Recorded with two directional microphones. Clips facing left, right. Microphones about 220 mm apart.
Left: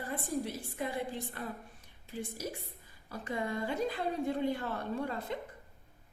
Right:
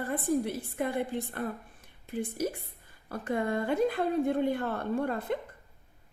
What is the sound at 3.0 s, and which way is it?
A woman's voice, 55° right (ahead or behind).